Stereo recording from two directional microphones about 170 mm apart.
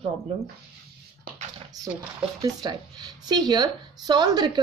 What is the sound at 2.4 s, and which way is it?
Speech, 25° right (ahead or behind).